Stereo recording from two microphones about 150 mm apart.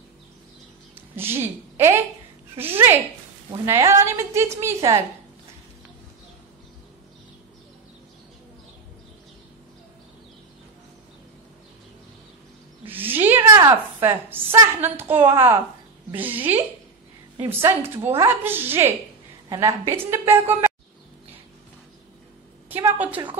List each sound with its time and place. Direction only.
0.9 s a woman's voice: 15° right (ahead or behind)
12.8 s a sound: 15° right (ahead or behind)
14.8 s a woman's voice: 15° right (ahead or behind)
17.8 s a woman's voice: 15° right (ahead or behind)
22.8 s a woman's voice: 10° right (ahead or behind)